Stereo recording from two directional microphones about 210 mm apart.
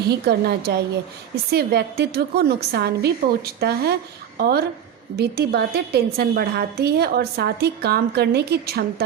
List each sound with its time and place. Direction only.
0.1 s a woman's voice: 50° right (ahead or behind)